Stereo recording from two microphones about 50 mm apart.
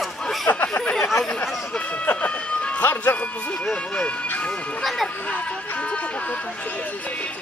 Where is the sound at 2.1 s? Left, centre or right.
Left.